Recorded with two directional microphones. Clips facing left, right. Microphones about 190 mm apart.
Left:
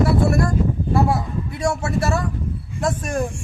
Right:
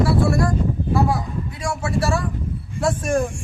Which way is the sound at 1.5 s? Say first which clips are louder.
Left 2 dB; 25° left (ahead or behind).